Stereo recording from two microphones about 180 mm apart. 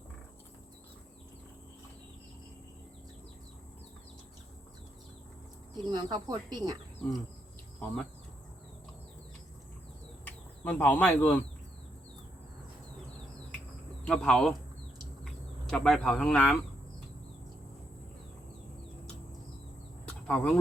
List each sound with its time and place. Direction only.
5.7 s speech: 25° right (ahead or behind)
10.2 s speech: 10° left (ahead or behind)
14.0 s speech: 5° left (ahead or behind)
15.7 s speech: 5° left (ahead or behind)
20.2 s speech: 10° left (ahead or behind)